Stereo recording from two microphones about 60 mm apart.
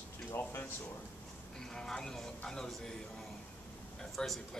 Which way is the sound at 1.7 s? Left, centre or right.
Centre.